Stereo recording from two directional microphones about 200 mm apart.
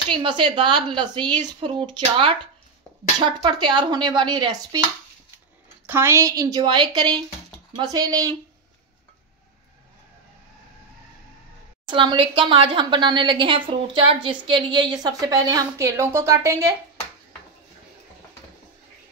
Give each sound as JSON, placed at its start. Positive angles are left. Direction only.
{"t": 0.1, "sound": "a woman's voice", "side_deg": -25}
{"t": 5.9, "sound": "a woman's voice", "side_deg": -10}
{"t": 11.9, "sound": "a woman's voice", "side_deg": -25}